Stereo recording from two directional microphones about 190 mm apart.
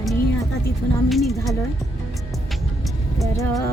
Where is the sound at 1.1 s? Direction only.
Centre (ahead or behind).